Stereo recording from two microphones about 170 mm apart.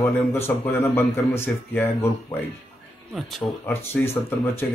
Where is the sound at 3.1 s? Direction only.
Centre (ahead or behind).